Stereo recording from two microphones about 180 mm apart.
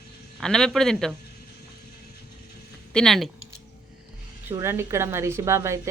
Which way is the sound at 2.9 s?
Centre (ahead or behind).